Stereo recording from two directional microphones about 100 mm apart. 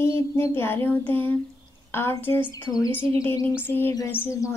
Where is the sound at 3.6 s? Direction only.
20° left (ahead or behind).